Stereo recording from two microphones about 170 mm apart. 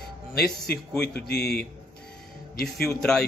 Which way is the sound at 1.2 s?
70° left (ahead or behind).